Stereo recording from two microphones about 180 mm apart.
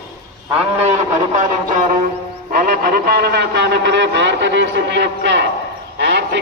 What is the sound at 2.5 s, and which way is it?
A man's voice, 55° right (ahead or behind).